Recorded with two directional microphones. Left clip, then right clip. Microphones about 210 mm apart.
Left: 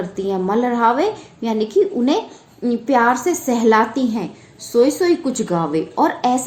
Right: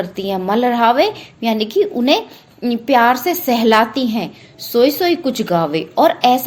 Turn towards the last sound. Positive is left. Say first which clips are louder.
# right 5 dB
turn(degrees=-30)  # may be behind; listen again after turning